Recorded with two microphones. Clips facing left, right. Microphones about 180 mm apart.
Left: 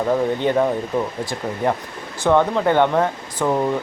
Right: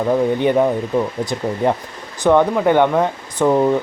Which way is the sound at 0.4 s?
15° right (ahead or behind).